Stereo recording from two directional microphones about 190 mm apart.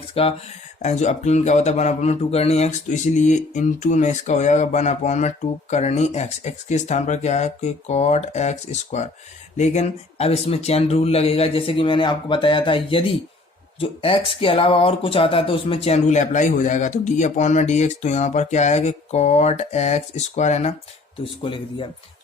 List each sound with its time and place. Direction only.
0.1 s speech: 30° left (ahead or behind)
21.4 s speech: 25° left (ahead or behind)